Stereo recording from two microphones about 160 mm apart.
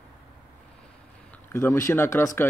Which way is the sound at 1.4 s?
15° left (ahead or behind).